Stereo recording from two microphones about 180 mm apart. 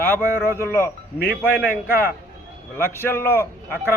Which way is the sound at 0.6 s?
15° left (ahead or behind).